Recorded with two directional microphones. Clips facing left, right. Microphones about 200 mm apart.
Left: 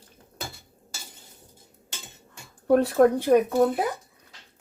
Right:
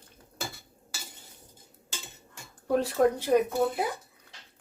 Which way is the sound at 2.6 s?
55° left (ahead or behind).